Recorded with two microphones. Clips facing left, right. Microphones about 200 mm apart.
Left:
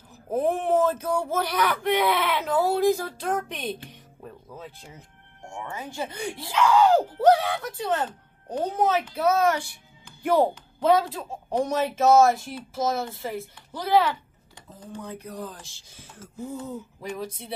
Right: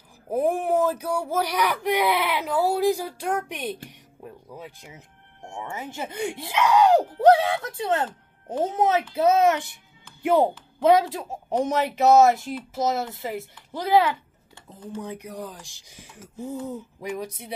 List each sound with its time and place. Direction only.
0.3 s a woman's voice: 10° right (ahead or behind)